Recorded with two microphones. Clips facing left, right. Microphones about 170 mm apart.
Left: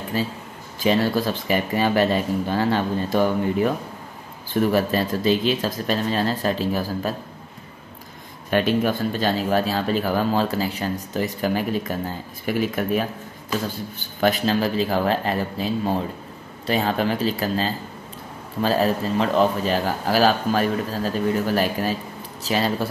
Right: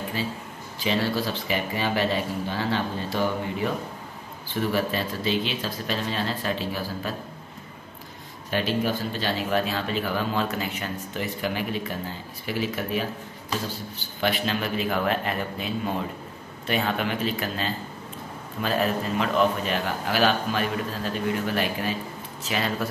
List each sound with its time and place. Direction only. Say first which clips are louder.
0.2 s speech: left 4 dB; 45° left (ahead or behind)
4.5 s speech: left 6 dB; 45° left (ahead or behind)
8.5 s a man's voice: left 5 dB; 55° left (ahead or behind); by 22.8 s 35° left (ahead or behind)